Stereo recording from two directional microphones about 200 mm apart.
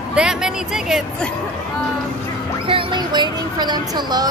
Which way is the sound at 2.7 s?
25° right (ahead or behind).